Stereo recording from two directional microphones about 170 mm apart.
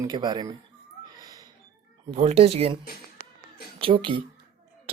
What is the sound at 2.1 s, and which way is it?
Speech, 35° right (ahead or behind).